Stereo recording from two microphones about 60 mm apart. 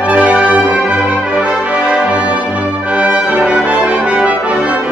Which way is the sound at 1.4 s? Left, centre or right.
Right.